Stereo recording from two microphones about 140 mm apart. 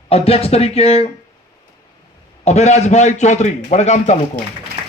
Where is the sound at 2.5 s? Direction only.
55° left (ahead or behind).